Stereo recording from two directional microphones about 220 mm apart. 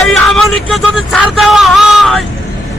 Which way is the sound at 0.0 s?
Centre (ahead or behind).